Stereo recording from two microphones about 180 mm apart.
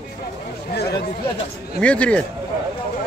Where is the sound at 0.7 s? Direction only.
65° left (ahead or behind).